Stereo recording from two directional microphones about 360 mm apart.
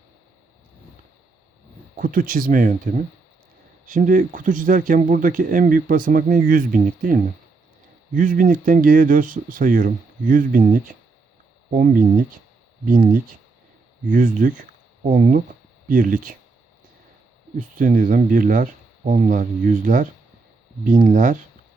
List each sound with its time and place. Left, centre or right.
2.0 s speech: right
17.6 s speech: right